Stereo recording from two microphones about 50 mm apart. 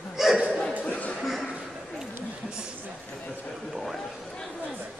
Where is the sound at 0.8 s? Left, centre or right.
Left.